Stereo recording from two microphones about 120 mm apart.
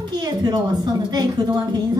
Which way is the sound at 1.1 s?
35° right (ahead or behind).